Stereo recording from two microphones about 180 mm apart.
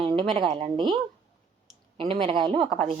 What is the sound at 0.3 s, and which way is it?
Speech, 35° right (ahead or behind).